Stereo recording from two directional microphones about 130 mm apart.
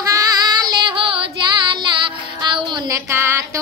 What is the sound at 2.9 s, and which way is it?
Music, 20° right (ahead or behind).